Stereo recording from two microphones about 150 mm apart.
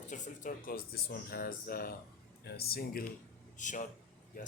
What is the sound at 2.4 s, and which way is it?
Speech, 90° left.